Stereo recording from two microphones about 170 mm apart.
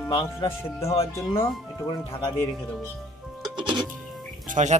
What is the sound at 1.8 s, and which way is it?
Speech, 30° left (ahead or behind).